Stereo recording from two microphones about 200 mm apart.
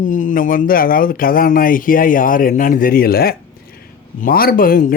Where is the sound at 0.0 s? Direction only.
40° left (ahead or behind).